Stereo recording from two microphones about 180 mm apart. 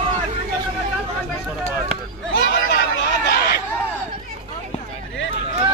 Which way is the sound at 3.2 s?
60° left (ahead or behind).